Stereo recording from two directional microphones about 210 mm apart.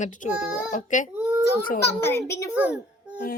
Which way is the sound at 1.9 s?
10° left (ahead or behind).